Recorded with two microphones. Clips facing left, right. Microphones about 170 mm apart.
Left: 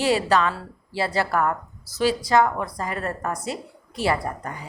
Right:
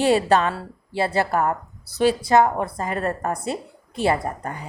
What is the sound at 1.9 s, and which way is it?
Speech, 55° right (ahead or behind).